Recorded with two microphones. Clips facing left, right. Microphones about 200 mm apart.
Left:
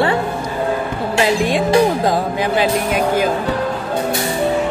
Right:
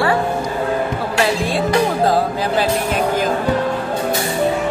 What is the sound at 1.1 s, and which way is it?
Speech, 20° left (ahead or behind).